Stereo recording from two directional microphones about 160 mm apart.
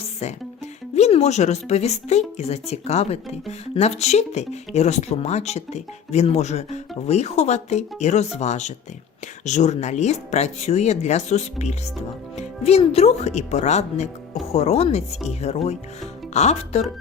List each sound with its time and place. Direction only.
0.0 s music: 45° left (ahead or behind)
0.9 s speech: 45° left (ahead or behind)